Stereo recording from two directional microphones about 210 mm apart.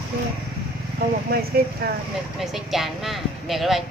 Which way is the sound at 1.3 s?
45° right (ahead or behind).